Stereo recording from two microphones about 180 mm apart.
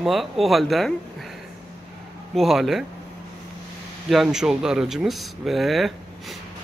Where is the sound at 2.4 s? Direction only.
Centre (ahead or behind).